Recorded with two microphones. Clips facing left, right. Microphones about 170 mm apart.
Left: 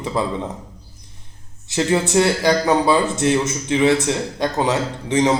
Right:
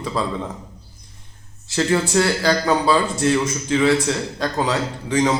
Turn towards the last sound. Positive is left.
turn(degrees=20)  # may be behind; listen again after turning